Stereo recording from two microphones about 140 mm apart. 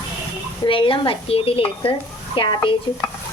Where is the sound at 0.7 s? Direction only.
40° left (ahead or behind).